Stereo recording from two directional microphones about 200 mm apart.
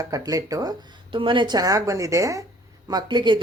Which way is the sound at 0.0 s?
15° right (ahead or behind).